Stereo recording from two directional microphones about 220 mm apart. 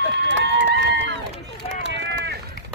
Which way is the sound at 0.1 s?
55° right (ahead or behind).